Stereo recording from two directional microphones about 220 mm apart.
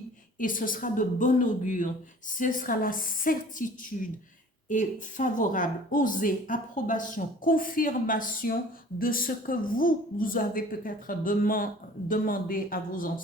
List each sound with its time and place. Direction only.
0.3 s a woman's voice: 40° left (ahead or behind)
4.7 s a woman's voice: 35° left (ahead or behind)